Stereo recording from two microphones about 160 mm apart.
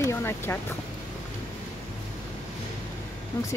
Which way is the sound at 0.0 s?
15° left (ahead or behind).